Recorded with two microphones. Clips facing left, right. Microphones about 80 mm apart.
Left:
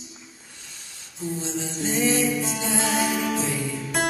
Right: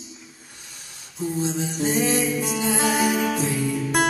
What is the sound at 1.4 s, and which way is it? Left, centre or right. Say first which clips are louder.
Music: right 6 dB; centre.